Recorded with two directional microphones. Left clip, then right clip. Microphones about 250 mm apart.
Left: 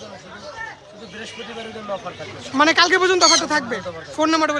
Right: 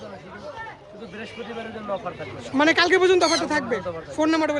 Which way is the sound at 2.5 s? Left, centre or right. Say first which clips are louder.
Left 3 dB; centre.